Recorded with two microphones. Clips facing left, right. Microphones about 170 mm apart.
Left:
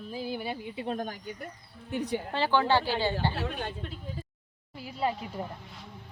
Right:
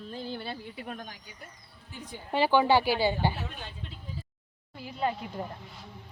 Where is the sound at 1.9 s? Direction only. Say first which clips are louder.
Left 13 dB; 70° left (ahead or behind).